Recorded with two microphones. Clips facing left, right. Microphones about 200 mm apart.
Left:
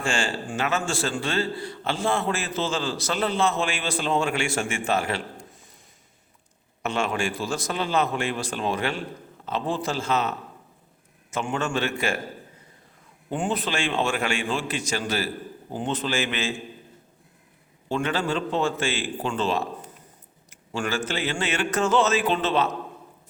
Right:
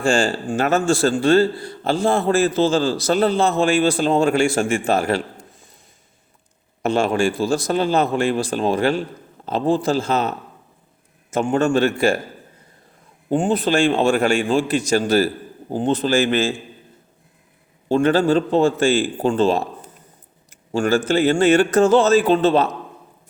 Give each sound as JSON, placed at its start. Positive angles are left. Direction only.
{"t": 0.0, "sound": "a man's voice", "side_deg": -35}
{"t": 6.8, "sound": "a man's voice", "side_deg": -35}
{"t": 13.3, "sound": "a man's voice", "side_deg": -30}
{"t": 17.8, "sound": "a man's voice", "side_deg": -35}
{"t": 20.7, "sound": "a man's voice", "side_deg": -45}